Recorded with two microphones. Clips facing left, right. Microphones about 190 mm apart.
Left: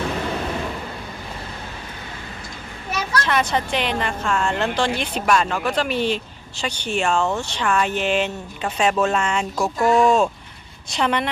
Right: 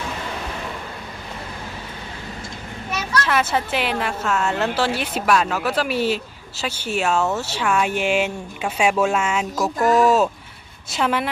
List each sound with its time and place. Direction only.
3.2 s a woman's voice: 5° right (ahead or behind)